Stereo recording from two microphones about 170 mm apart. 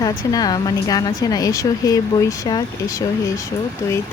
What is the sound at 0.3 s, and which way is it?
A woman's voice, 20° left (ahead or behind).